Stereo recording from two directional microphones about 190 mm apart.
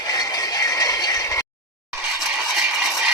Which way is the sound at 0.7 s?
20° left (ahead or behind).